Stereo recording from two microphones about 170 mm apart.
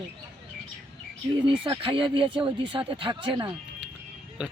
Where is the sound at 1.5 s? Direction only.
30° right (ahead or behind).